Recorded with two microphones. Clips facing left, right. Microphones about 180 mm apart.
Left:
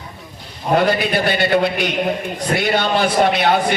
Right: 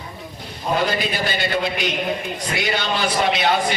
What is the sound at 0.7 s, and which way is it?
A man's voice, 60° left (ahead or behind).